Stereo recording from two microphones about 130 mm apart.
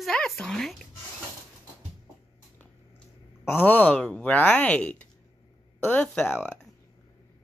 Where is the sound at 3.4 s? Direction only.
15° left (ahead or behind).